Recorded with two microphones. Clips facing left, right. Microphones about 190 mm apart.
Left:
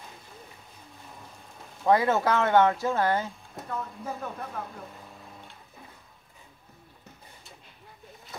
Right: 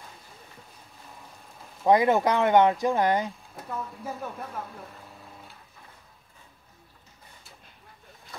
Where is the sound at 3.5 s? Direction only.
5° right (ahead or behind).